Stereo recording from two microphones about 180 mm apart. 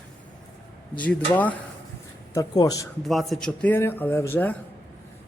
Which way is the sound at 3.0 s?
Centre (ahead or behind).